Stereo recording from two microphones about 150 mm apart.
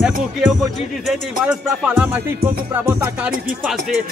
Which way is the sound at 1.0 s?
5° right (ahead or behind).